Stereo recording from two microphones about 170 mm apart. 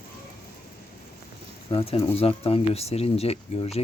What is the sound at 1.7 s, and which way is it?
Speech, 35° left (ahead or behind).